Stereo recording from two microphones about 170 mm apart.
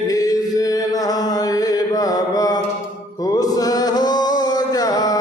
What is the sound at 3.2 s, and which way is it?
Music, 20° left (ahead or behind).